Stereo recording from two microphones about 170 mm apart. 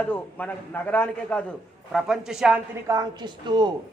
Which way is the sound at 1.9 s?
Centre (ahead or behind).